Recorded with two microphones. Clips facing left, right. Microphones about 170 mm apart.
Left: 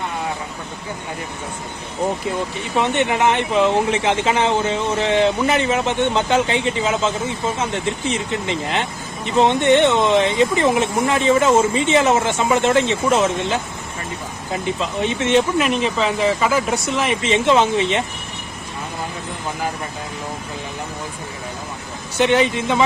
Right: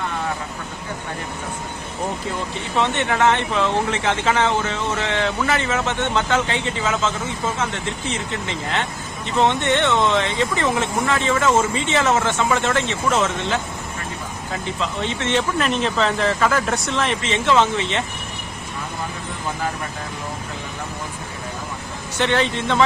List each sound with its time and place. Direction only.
2.7 s speech: 15° left (ahead or behind)
17.2 s speech: 20° left (ahead or behind)
22.2 s speech: 15° left (ahead or behind)